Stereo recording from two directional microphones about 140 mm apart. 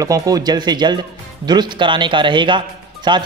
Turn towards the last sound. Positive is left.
turn(degrees=-35)  # may be behind; listen again after turning